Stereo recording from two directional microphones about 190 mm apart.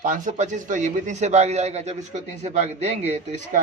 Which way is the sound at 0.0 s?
45° right (ahead or behind).